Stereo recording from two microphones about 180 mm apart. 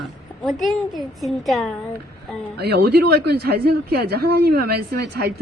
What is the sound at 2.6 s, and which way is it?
A woman's voice, 65° right (ahead or behind).